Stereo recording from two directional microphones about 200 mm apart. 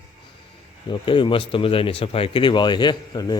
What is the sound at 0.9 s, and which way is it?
A man's voice, 25° left (ahead or behind).